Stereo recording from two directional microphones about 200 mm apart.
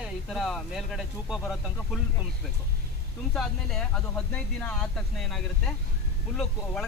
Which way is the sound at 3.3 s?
Centre (ahead or behind).